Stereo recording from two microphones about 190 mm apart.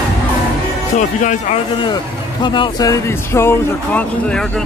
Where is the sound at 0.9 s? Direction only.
40° left (ahead or behind).